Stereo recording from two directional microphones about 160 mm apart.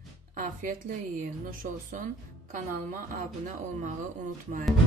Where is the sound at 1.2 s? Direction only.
55° right (ahead or behind).